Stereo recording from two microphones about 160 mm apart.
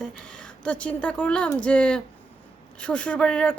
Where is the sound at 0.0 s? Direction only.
5° left (ahead or behind).